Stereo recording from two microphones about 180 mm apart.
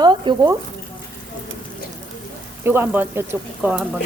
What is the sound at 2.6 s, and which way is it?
Speech, 10° right (ahead or behind).